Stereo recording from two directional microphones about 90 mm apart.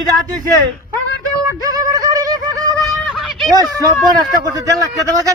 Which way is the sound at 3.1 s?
Centre (ahead or behind).